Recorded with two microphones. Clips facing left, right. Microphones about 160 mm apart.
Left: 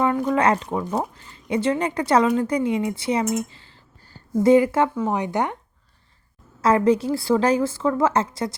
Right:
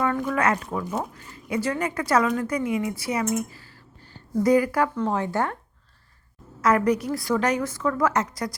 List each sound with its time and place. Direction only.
0.0 s speech: 20° left (ahead or behind)
4.9 s speech: 10° left (ahead or behind)
6.6 s speech: 25° left (ahead or behind)